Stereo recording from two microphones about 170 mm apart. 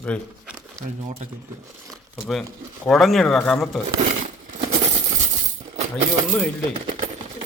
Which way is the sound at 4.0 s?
50° right (ahead or behind).